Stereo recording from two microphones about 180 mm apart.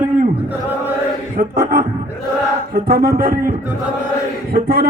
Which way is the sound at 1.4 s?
55° right (ahead or behind).